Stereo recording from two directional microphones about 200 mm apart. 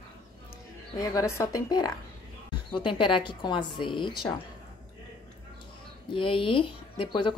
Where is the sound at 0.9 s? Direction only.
15° left (ahead or behind).